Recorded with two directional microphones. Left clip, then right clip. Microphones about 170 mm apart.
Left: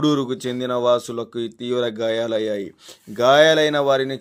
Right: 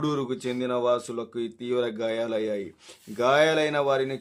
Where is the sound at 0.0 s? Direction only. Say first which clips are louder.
Left 7 dB; 30° left (ahead or behind).